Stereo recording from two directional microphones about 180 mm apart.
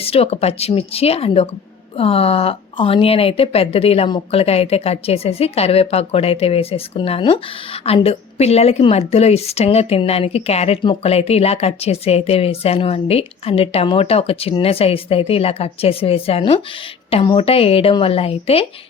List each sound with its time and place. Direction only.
0.0 s speech: 35° left (ahead or behind)